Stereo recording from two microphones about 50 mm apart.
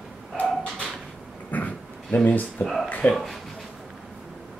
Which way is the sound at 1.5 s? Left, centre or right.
Left.